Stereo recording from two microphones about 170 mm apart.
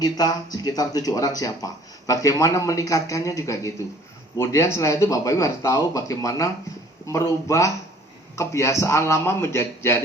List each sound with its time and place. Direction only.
0.0 s a man's voice: 20° left (ahead or behind)